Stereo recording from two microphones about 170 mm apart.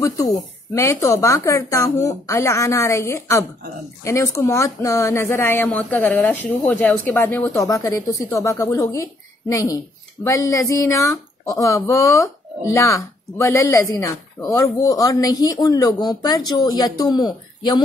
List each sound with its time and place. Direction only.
0.0 s speech: 20° left (ahead or behind)